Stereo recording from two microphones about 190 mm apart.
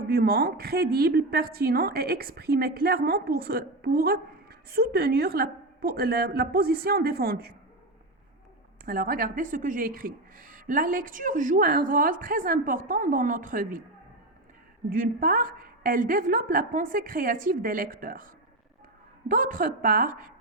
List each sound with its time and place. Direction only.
0.1 s a woman's voice: 55° right (ahead or behind)
8.9 s a woman's voice: 50° right (ahead or behind)
14.8 s a woman's voice: 50° right (ahead or behind)
19.3 s a woman's voice: 45° right (ahead or behind)